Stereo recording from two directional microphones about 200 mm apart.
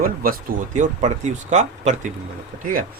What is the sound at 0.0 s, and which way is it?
Speech, 45° right (ahead or behind).